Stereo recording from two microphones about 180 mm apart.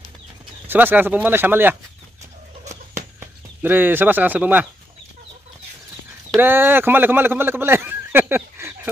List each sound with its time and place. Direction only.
0.7 s speech: 10° right (ahead or behind)
2.6 s a sound: 40° right (ahead or behind)
3.2 s speech: 10° right (ahead or behind)
6.4 s speech: 10° right (ahead or behind)